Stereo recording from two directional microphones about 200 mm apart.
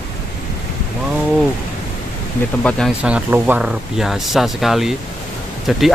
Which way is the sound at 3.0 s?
5° right (ahead or behind).